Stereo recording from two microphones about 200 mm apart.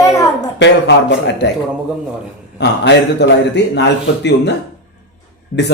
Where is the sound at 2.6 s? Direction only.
60° left (ahead or behind).